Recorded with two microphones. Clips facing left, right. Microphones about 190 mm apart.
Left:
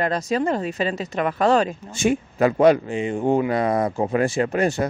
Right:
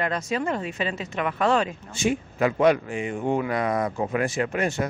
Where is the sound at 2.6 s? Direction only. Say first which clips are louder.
Left 4 dB; 30° left (ahead or behind).